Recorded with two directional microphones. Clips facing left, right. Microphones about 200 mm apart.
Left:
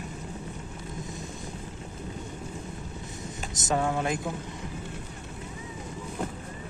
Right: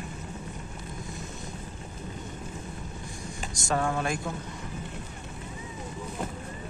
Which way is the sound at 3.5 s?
20° left (ahead or behind).